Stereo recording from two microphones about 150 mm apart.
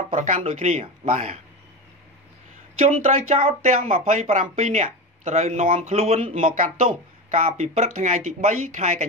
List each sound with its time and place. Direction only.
0.1 s speech: 55° right (ahead or behind)
3.0 s speech: 45° right (ahead or behind)